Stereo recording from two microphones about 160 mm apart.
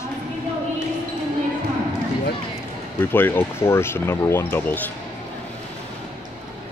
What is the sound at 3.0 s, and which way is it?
Speech, 15° left (ahead or behind).